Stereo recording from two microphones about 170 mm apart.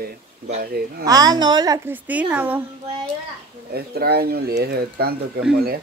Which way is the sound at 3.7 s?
65° right (ahead or behind).